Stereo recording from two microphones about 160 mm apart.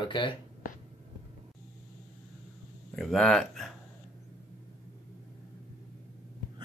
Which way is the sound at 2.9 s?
Centre (ahead or behind).